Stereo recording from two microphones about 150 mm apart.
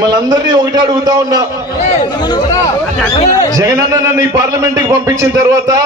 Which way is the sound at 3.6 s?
20° right (ahead or behind).